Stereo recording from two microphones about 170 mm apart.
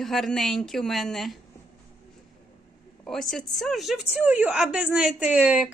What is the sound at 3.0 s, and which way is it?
A woman's voice, centre (ahead or behind).